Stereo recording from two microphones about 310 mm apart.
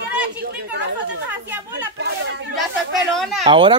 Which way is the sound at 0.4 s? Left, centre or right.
Right.